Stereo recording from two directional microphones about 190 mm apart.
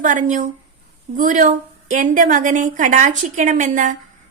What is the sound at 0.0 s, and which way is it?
A woman's voice, 40° right (ahead or behind).